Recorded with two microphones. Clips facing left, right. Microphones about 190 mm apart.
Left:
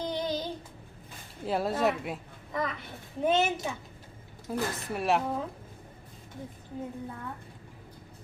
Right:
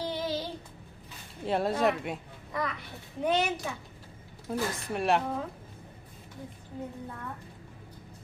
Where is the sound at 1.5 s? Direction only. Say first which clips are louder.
Right 1 dB; centre (ahead or behind).